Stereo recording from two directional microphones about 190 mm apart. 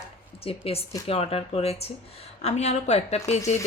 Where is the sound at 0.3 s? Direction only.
30° left (ahead or behind).